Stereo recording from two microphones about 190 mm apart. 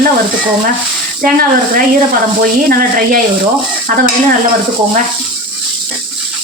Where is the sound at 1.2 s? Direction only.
45° right (ahead or behind).